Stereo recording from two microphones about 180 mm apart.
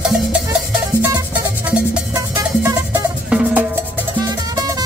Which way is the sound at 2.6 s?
15° right (ahead or behind).